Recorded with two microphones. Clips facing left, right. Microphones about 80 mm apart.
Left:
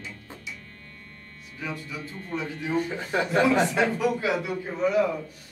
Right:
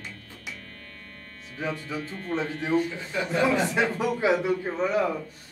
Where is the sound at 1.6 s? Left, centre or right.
Right.